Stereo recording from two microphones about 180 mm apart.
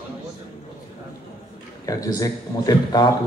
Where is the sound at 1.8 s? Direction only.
20° left (ahead or behind).